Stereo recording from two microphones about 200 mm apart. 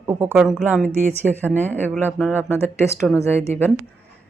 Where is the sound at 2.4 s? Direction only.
10° left (ahead or behind).